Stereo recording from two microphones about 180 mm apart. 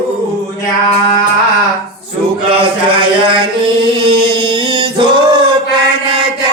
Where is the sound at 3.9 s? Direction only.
25° right (ahead or behind).